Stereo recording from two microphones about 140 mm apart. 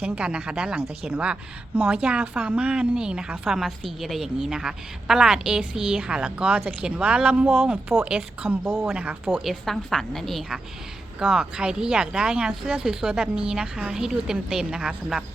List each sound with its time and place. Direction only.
0.0 s speech: 10° right (ahead or behind)
9.4 s speech: centre (ahead or behind)